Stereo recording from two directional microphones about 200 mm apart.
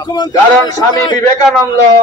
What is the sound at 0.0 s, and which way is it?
A man's voice, 20° left (ahead or behind).